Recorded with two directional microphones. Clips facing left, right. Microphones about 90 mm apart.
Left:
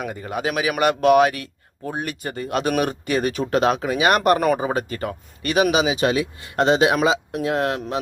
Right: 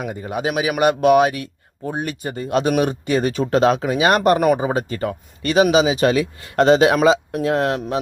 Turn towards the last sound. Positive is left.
turn(degrees=-30)  # may be behind; listen again after turning